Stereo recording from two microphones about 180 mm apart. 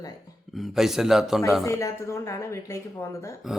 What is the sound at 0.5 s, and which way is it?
Speech, centre (ahead or behind).